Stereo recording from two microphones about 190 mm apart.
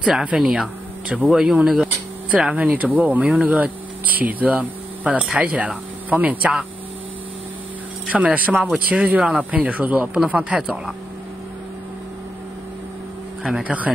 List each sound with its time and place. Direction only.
0.0 s speech: 5° right (ahead or behind)
8.1 s speech: 10° right (ahead or behind)
13.4 s speech: 5° right (ahead or behind)